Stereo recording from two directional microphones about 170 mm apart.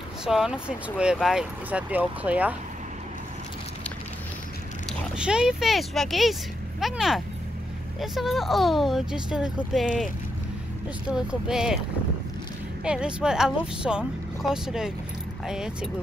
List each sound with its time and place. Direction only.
0.2 s speech: 5° right (ahead or behind)
5.1 s speech: 5° right (ahead or behind)
11.1 s speech: 5° right (ahead or behind)
12.8 s speech: 5° right (ahead or behind)